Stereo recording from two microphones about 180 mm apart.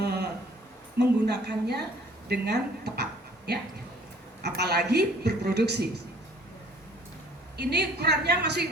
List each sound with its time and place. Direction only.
0.0 s a sound: 65° right (ahead or behind)
0.9 s speech: 70° right (ahead or behind)
2.3 s dog: 65° right (ahead or behind)
4.4 s speech: 65° right (ahead or behind)
7.5 s speech: 65° right (ahead or behind)